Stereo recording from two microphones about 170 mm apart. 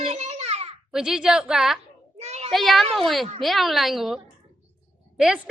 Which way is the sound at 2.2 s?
40° right (ahead or behind).